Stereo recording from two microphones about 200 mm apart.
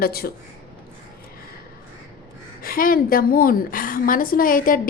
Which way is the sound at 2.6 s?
45° left (ahead or behind).